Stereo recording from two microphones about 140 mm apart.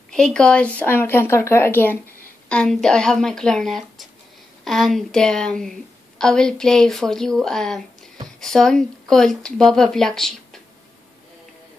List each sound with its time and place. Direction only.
0.1 s speech: 5° left (ahead or behind)
2.5 s a woman's voice: 5° left (ahead or behind)